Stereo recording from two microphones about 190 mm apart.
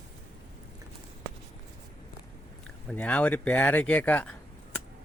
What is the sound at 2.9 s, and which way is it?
Speech, 5° left (ahead or behind).